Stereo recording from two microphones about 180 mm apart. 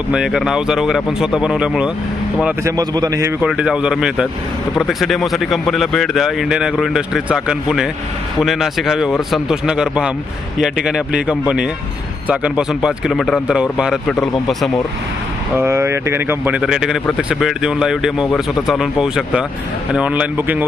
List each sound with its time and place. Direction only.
0.1 s speech: centre (ahead or behind)
2.7 s a man's voice: 20° right (ahead or behind)
3.4 s speech: 5° right (ahead or behind)
15.5 s speech: 15° right (ahead or behind)